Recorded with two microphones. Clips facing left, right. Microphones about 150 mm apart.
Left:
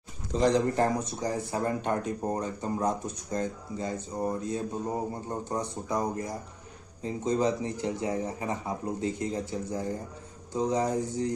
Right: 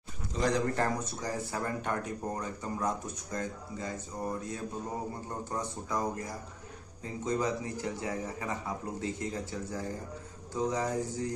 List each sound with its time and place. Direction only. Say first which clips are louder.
0.4 s speech: left 5 dB; 25° left (ahead or behind)